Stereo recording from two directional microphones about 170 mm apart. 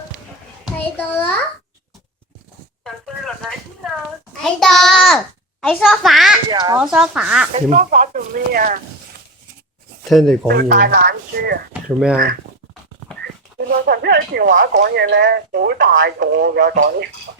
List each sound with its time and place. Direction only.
0.9 s a child's voice: 10° left (ahead or behind)
2.8 s a sound: centre (ahead or behind)
4.4 s a child's voice: centre (ahead or behind)
6.5 s speech: 25° right (ahead or behind)
6.7 s a child's voice: 5° right (ahead or behind)
7.5 s speech: 45° right (ahead or behind)
10.1 s a child's voice: centre (ahead or behind)
10.5 s speech: 65° right (ahead or behind)
11.9 s a child's voice: 5° right (ahead or behind)
13.7 s speech: 65° right (ahead or behind)